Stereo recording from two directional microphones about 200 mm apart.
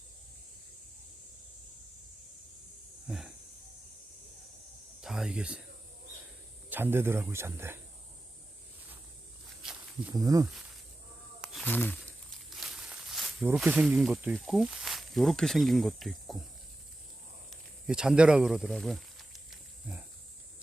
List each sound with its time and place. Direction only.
3.1 s snake: centre (ahead or behind)
5.0 s speech: 5° right (ahead or behind)
6.7 s speech: 10° right (ahead or behind)
10.1 s speech: 20° right (ahead or behind)
11.3 s a sound: 5° right (ahead or behind)
11.6 s a sound: 10° left (ahead or behind)
12.5 s speech: centre (ahead or behind)
17.5 s snake: 5° right (ahead or behind)